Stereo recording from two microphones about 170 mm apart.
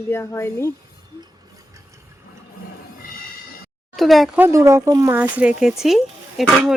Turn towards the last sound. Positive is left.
turn(degrees=0)  # may be behind; listen again after turning